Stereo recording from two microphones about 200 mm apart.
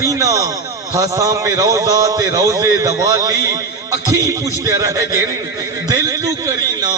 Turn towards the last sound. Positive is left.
turn(degrees=-20)  # may be behind; listen again after turning